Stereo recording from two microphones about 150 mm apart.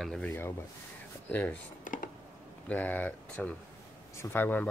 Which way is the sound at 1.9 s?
60° left (ahead or behind).